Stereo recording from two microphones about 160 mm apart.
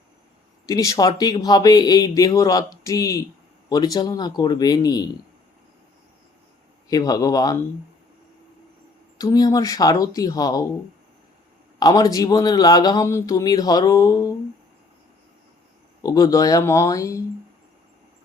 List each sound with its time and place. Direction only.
0.7 s speech: 20° left (ahead or behind)
6.8 s speech: 20° left (ahead or behind)
9.1 s speech: 25° left (ahead or behind)
11.8 s speech: 25° left (ahead or behind)
16.0 s speech: 25° left (ahead or behind)